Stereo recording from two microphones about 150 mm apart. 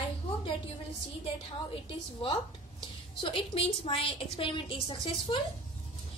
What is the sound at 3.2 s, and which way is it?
A woman's voice, 35° left (ahead or behind).